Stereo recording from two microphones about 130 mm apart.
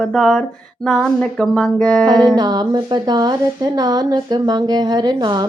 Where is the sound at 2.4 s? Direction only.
30° right (ahead or behind).